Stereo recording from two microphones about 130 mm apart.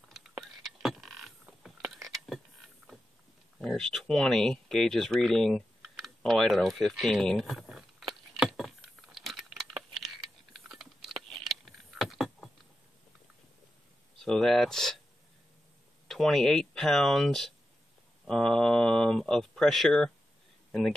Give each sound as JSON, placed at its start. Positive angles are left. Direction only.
{"t": 0.8, "sound": "a sound", "side_deg": 0}
{"t": 2.8, "sound": "mechanisms", "side_deg": -15}
{"t": 3.6, "sound": "speech", "side_deg": 0}
{"t": 8.1, "sound": "a sound", "side_deg": 0}
{"t": 14.2, "sound": "speech", "side_deg": 5}
{"t": 16.1, "sound": "speech", "side_deg": 0}